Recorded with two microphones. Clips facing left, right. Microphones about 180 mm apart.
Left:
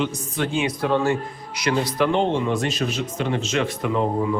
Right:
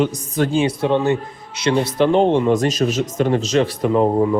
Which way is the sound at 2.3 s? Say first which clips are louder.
Right 7 dB; 45° right (ahead or behind).